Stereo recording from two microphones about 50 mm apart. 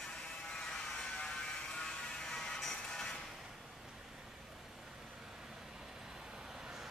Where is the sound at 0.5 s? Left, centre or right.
Centre.